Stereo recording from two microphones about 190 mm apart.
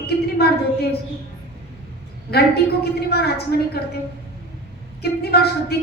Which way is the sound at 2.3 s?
55° left (ahead or behind).